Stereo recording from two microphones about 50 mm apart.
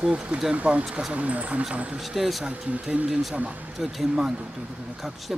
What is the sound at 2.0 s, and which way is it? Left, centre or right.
Speech, centre.